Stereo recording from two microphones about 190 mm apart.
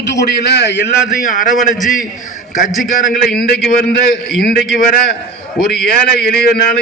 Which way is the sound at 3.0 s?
55° left (ahead or behind).